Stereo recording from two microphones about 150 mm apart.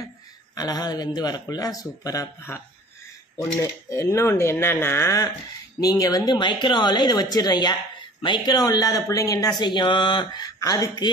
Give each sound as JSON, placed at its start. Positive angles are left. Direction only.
{"t": 0.6, "sound": "speech", "side_deg": 25}
{"t": 3.9, "sound": "speech", "side_deg": 20}